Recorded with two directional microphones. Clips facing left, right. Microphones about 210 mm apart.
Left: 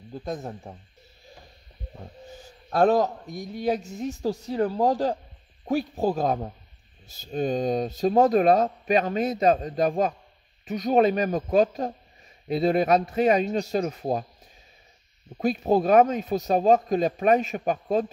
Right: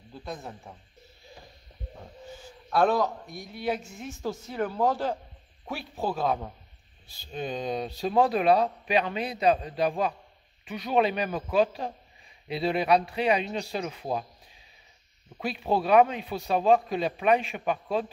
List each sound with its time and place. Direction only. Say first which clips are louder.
0.1 s speech: left 6 dB; 45° left (ahead or behind)
2.7 s speech: left 3 dB; 40° left (ahead or behind)
15.3 s speech: left 6 dB; 45° left (ahead or behind)